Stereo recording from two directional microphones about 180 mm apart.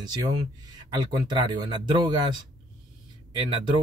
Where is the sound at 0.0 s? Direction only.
25° right (ahead or behind).